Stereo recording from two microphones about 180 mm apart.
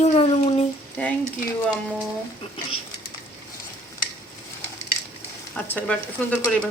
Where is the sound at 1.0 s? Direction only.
10° left (ahead or behind).